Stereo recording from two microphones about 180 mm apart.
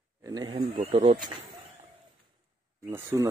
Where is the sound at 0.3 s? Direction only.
25° right (ahead or behind).